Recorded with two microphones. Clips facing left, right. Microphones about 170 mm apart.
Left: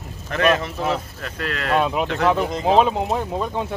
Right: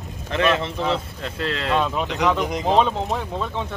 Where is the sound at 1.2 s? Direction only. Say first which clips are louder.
Right 1 dB; 25° right (ahead or behind).